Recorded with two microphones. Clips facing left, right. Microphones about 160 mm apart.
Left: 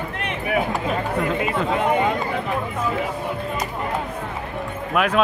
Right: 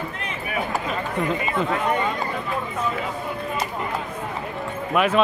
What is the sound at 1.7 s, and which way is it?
Speech, 20° left (ahead or behind).